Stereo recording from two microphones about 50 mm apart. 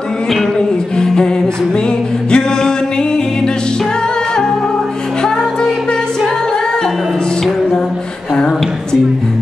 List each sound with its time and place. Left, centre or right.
0.6 s music: centre
2.3 s music: centre
5.2 s music: centre